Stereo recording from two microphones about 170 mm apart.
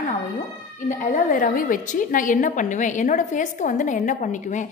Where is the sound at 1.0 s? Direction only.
50° left (ahead or behind).